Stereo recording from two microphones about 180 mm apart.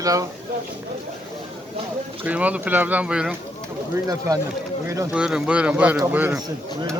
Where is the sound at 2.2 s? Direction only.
10° right (ahead or behind).